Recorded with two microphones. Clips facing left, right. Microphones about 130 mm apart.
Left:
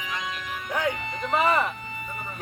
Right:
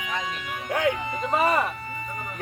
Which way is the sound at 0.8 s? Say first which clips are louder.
Right 3 dB; 55° right (ahead or behind).